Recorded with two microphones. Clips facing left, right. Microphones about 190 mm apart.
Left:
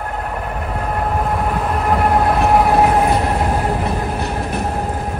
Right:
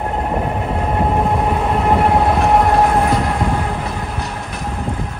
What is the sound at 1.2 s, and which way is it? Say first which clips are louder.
Train: right 2 dB; centre (ahead or behind).